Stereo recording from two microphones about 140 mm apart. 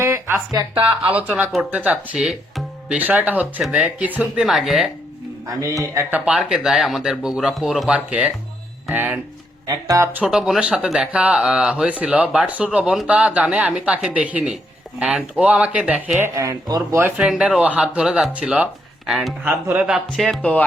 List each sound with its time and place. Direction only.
0.0 s speech: 15° right (ahead or behind); by 4.9 s centre (ahead or behind)
5.8 s speech: 20° right (ahead or behind)
6.1 s speech: 10° right (ahead or behind)
9.6 s speech: 25° right (ahead or behind)
17.0 s speech: 10° right (ahead or behind)
20.2 s speech: 5° left (ahead or behind)